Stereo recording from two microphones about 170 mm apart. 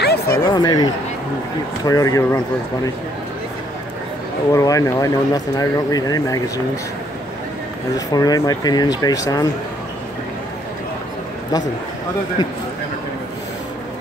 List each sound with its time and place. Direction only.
0.0 s a sound: 70° left (ahead or behind)
0.5 s speech: 25° left (ahead or behind)
1.9 s speech: 20° left (ahead or behind)
4.5 s speech: 20° left (ahead or behind)
8.1 s speech: 20° left (ahead or behind)